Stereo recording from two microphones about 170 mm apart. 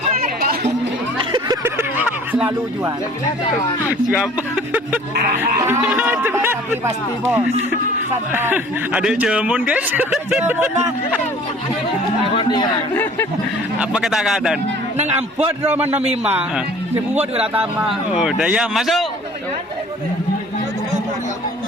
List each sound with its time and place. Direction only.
1.2 s a sound: 25° right (ahead or behind)
1.6 s music: 10° right (ahead or behind)
4.1 s speech: 5° right (ahead or behind)
12.2 s speech: 30° left (ahead or behind)
13.7 s speech: 5° right (ahead or behind)
14.9 s a man's voice: 40° right (ahead or behind)
15.4 s speech: 10° right (ahead or behind)